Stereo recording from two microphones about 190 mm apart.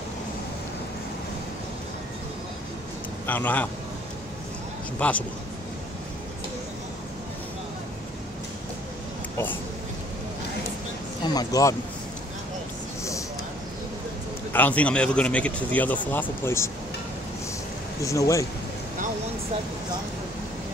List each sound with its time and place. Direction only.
3.3 s a man's voice: 10° left (ahead or behind)
4.9 s a man's voice: 5° left (ahead or behind)
11.2 s speech: 20° left (ahead or behind)
14.5 s a man's voice: 10° left (ahead or behind)
18.0 s a man's voice: 15° left (ahead or behind)